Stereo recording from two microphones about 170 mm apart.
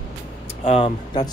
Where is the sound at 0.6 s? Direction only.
35° left (ahead or behind).